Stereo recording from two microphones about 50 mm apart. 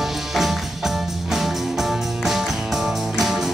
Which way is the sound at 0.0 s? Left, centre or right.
Centre.